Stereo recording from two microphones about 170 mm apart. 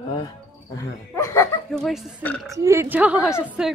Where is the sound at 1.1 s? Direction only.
15° left (ahead or behind).